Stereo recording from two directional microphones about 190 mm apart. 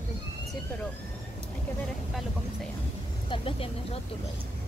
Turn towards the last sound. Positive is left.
turn(degrees=30)  # may be behind; listen again after turning